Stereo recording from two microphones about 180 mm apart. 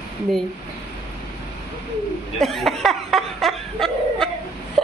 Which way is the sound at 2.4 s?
Centre (ahead or behind).